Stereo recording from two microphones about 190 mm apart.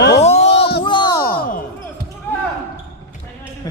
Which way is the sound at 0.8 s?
25° left (ahead or behind).